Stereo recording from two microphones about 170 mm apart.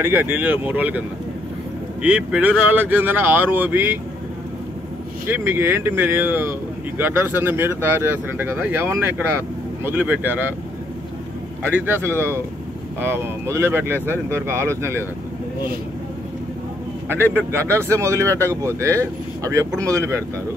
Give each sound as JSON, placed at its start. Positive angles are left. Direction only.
{"t": 0.0, "sound": "speech", "side_deg": -10}
{"t": 5.3, "sound": "speech", "side_deg": -15}
{"t": 11.7, "sound": "speech", "side_deg": -10}
{"t": 17.1, "sound": "speech", "side_deg": -10}